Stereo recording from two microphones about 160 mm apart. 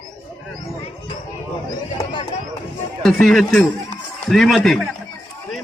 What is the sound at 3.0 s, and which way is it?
A man's voice, centre (ahead or behind).